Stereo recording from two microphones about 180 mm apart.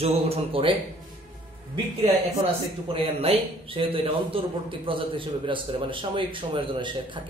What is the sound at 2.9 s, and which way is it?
A man's voice, 30° right (ahead or behind).